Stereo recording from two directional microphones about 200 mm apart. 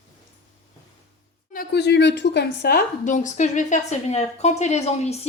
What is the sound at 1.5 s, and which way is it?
A woman's voice, 50° left (ahead or behind).